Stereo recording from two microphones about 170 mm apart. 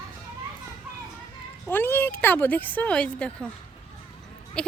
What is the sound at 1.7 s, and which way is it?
A woman's voice, 10° left (ahead or behind).